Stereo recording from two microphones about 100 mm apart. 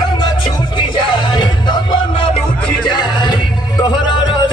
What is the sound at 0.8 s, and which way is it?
Music, 50° left (ahead or behind).